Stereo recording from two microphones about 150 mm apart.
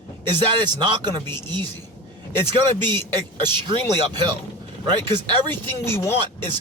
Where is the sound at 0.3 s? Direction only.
30° right (ahead or behind).